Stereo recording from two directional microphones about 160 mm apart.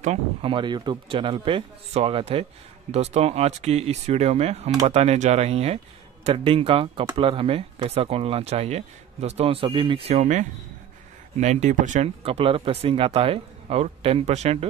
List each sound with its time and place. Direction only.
0.0 s speech: 40° right (ahead or behind)